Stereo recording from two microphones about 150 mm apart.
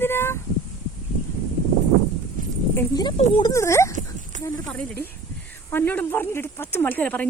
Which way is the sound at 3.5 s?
20° left (ahead or behind).